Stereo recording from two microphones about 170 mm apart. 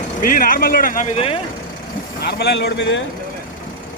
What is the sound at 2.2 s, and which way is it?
Speech, 75° left (ahead or behind).